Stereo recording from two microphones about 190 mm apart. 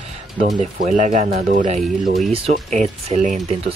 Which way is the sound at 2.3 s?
30° right (ahead or behind).